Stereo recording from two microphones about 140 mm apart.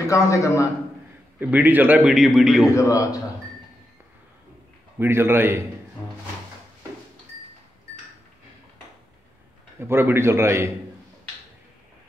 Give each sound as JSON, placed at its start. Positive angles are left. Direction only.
{"t": 0.0, "sound": "a man's voice", "side_deg": 20}
{"t": 1.4, "sound": "a man's voice", "side_deg": -10}
{"t": 2.7, "sound": "a man's voice", "side_deg": 25}
{"t": 4.9, "sound": "a man's voice", "side_deg": -15}
{"t": 9.8, "sound": "a man's voice", "side_deg": -15}